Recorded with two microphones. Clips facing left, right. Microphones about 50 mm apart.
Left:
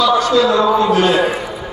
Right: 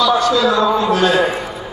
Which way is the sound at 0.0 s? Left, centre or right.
Left.